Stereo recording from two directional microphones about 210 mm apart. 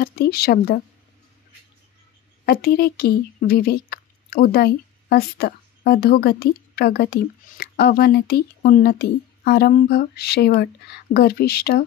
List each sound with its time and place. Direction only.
0.0 s speech: 45° left (ahead or behind)
2.4 s speech: 45° left (ahead or behind)